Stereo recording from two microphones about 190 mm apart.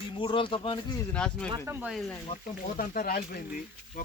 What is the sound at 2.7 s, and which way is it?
Speech, 50° left (ahead or behind).